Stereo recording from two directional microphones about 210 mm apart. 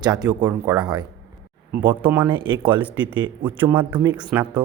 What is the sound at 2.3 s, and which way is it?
Speech, 25° right (ahead or behind).